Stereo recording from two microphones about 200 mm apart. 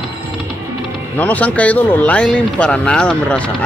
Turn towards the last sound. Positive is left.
turn(degrees=5)  # may be behind; listen again after turning